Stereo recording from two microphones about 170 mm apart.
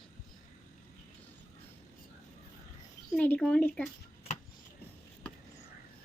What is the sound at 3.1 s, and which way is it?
Speech, 10° left (ahead or behind).